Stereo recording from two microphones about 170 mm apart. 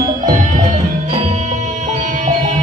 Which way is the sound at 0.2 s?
45° right (ahead or behind).